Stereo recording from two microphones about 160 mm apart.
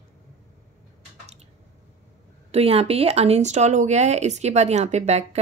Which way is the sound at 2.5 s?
40° right (ahead or behind).